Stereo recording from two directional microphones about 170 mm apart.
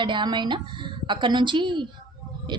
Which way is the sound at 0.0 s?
25° right (ahead or behind).